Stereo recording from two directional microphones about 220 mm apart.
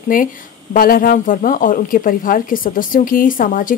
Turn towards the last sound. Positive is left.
turn(degrees=40)  # may be behind; listen again after turning